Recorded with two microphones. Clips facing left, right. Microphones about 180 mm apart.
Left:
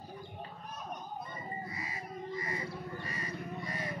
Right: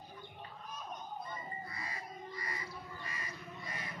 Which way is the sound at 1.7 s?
20° left (ahead or behind).